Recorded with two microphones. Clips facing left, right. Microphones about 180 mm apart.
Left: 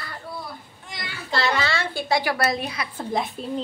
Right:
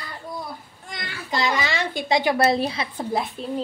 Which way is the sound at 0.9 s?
55° right (ahead or behind).